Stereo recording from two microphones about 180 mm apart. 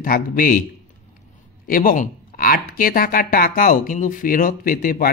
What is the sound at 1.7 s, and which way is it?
Speech, 50° left (ahead or behind).